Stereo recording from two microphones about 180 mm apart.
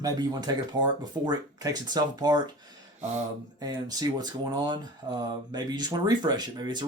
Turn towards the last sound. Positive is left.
turn(degrees=-25)  # may be behind; listen again after turning